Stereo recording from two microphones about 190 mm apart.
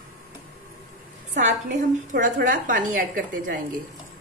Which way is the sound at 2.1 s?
45° right (ahead or behind).